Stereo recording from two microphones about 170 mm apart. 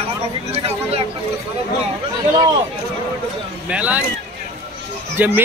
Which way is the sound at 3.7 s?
10° right (ahead or behind).